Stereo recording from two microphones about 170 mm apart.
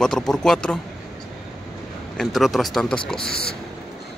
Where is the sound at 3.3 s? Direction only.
70° left (ahead or behind).